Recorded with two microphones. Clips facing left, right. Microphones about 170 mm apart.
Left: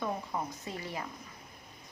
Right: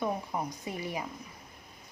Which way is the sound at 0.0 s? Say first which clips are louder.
Right 2 dB; 15° right (ahead or behind).